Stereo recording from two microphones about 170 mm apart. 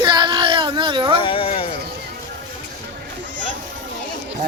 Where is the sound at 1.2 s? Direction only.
30° left (ahead or behind).